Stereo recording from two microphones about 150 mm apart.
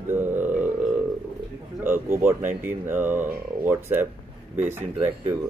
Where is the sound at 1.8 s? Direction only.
15° right (ahead or behind).